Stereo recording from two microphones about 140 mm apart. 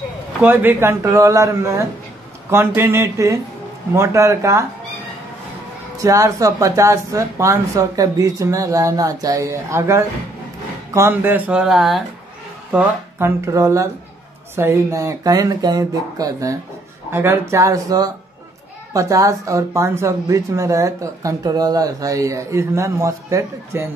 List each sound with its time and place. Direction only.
0.4 s speech: 15° right (ahead or behind)
5.9 s speech: 25° right (ahead or behind); by 12.0 s 5° right (ahead or behind)
12.7 s speech: 20° right (ahead or behind)